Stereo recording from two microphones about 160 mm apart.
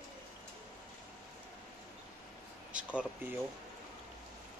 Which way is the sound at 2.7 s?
5° right (ahead or behind).